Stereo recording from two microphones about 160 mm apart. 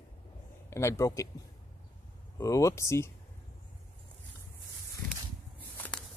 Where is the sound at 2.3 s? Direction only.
20° left (ahead or behind).